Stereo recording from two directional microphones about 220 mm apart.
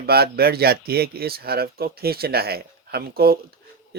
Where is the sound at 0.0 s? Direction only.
45° right (ahead or behind).